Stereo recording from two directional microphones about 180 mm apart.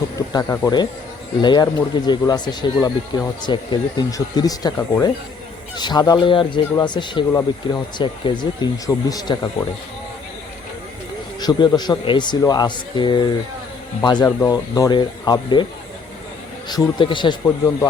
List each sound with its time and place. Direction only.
0.2 s speech: 15° left (ahead or behind)
11.3 s speech: 20° left (ahead or behind)
16.6 s speech: 25° left (ahead or behind)